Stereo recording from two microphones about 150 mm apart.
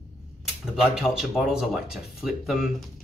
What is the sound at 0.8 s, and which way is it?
Speech, 5° right (ahead or behind).